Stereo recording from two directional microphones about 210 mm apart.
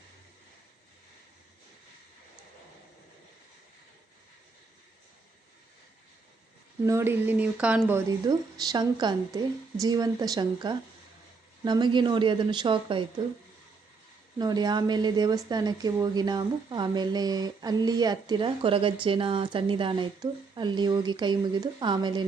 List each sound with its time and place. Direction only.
6.8 s speech: 10° right (ahead or behind)
14.3 s speech: 20° right (ahead or behind)